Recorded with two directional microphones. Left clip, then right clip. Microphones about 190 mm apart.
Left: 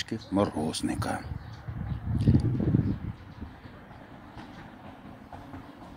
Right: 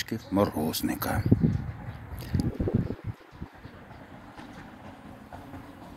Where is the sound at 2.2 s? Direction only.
Centre (ahead or behind).